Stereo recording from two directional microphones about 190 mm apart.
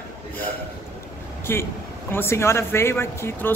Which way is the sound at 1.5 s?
10° left (ahead or behind).